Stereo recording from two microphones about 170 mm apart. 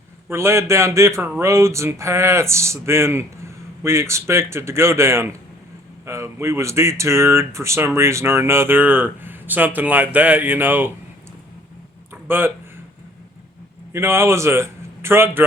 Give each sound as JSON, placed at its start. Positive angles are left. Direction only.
{"t": 0.3, "sound": "speech", "side_deg": -15}
{"t": 12.1, "sound": "a sound", "side_deg": -10}
{"t": 13.9, "sound": "a man's voice", "side_deg": -15}